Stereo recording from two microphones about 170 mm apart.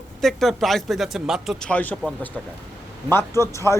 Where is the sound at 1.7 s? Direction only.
10° left (ahead or behind).